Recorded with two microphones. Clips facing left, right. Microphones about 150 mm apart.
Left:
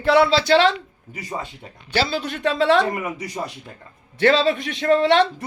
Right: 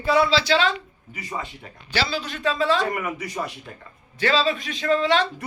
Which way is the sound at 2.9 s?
30° left (ahead or behind).